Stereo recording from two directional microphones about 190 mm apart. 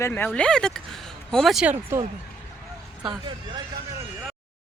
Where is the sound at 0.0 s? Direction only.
10° left (ahead or behind).